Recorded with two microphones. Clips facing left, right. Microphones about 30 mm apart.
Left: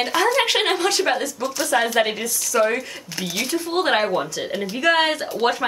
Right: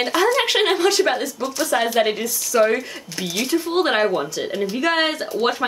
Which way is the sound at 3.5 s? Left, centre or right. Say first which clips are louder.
Right 4 dB; centre.